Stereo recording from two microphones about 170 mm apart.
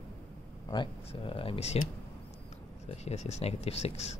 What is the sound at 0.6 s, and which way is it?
Speech, 30° left (ahead or behind).